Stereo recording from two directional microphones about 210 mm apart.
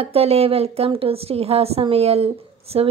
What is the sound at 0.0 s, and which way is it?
Speech, 30° right (ahead or behind).